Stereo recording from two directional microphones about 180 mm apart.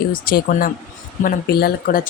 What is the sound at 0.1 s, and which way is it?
Speech, 50° left (ahead or behind).